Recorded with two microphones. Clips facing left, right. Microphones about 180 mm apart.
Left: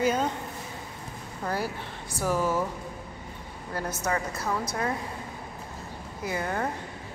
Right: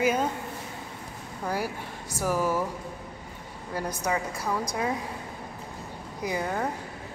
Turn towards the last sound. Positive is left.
turn(degrees=-5)  # may be behind; listen again after turning